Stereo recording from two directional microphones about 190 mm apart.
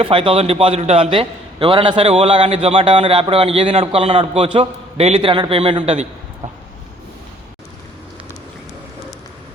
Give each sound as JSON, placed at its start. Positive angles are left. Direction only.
{"t": 0.0, "sound": "a man's voice", "side_deg": -30}